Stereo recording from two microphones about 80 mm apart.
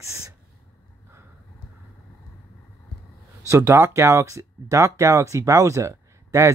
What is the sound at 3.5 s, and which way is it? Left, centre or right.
Speech, right.